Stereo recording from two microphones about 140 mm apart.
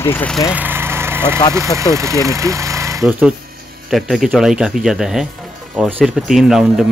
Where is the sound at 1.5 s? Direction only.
20° right (ahead or behind).